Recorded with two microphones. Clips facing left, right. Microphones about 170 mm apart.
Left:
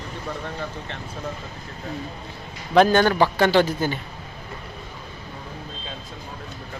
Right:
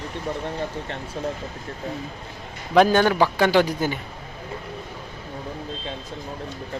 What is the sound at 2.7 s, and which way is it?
A man's voice, 5° right (ahead or behind).